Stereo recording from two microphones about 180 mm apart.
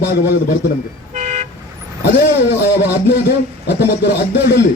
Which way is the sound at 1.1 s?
45° right (ahead or behind).